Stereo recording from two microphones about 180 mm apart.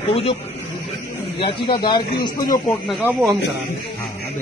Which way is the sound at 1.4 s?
25° left (ahead or behind).